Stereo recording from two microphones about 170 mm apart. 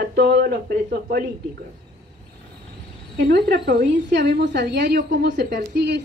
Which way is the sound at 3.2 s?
75° right (ahead or behind).